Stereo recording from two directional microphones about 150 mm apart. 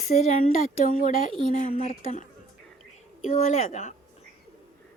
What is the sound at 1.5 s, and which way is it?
Speech, 50° left (ahead or behind).